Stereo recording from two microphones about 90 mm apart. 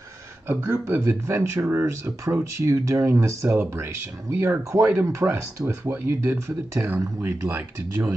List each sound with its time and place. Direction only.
0.5 s speech: 25° right (ahead or behind)
3.4 s speech: 25° right (ahead or behind)